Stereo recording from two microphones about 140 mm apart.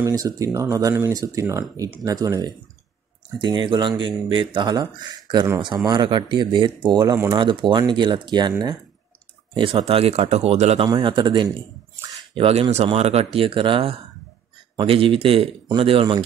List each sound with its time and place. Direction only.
0.0 s speech: 25° right (ahead or behind)
5.9 s speech: 35° right (ahead or behind); by 10.9 s 50° right (ahead or behind)
10.9 s speech: 35° right (ahead or behind)
12.2 s a sound: 45° right (ahead or behind)
12.7 s speech: 45° right (ahead or behind)